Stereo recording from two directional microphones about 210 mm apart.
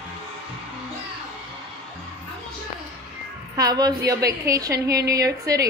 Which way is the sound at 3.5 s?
20° right (ahead or behind).